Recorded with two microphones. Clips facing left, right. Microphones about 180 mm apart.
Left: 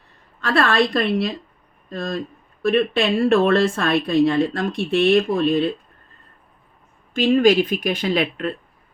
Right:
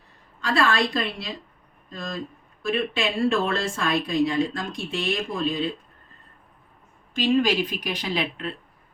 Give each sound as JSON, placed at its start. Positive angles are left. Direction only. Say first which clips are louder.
{"t": 0.4, "sound": "speech", "louder": "left 4 dB", "side_deg": 60}
{"t": 7.1, "sound": "speech", "louder": "left 6 dB", "side_deg": 50}